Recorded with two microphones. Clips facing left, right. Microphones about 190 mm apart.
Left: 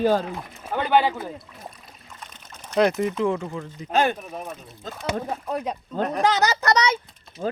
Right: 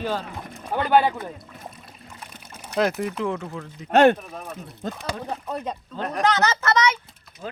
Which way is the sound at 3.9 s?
70° right (ahead or behind).